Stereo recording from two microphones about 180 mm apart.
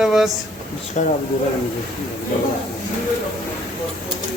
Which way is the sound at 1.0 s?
40° left (ahead or behind).